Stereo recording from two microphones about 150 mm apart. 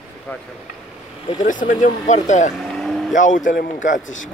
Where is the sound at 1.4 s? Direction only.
60° left (ahead or behind).